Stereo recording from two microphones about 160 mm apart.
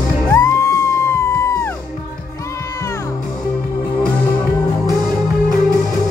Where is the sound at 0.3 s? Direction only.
20° left (ahead or behind).